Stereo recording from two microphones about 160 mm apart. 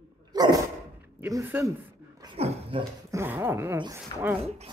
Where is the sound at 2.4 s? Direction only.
40° right (ahead or behind).